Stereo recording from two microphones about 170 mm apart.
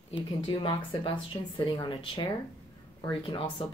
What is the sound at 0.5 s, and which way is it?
Speech, 30° left (ahead or behind).